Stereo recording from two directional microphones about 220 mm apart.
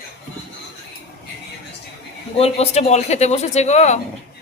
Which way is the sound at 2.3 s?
25° left (ahead or behind).